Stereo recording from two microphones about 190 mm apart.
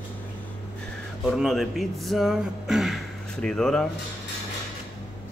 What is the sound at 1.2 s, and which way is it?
Speech, centre (ahead or behind).